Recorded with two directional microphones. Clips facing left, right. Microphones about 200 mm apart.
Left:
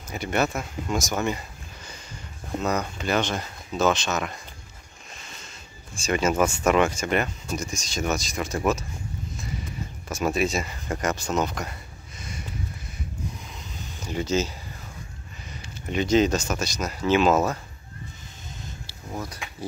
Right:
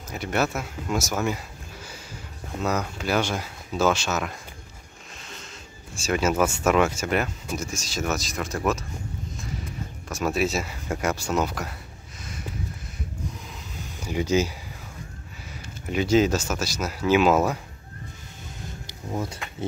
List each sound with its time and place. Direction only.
0.1 s speech: centre (ahead or behind)
2.6 s speech: 5° right (ahead or behind)
5.9 s speech: 5° right (ahead or behind)
10.0 s speech: centre (ahead or behind)
13.9 s speech: 10° right (ahead or behind)
15.9 s speech: 5° right (ahead or behind)
18.9 s a sound: 25° right (ahead or behind)